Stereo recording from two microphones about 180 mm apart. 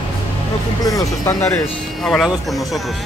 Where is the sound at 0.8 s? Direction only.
20° left (ahead or behind).